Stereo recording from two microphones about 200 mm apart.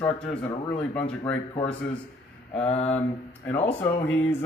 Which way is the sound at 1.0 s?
25° left (ahead or behind).